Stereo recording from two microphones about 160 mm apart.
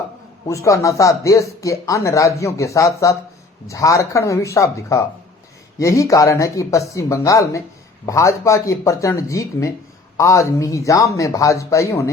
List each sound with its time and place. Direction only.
0.4 s speech: 20° left (ahead or behind)